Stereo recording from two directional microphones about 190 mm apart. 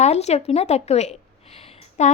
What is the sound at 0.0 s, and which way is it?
A woman's voice, 35° left (ahead or behind).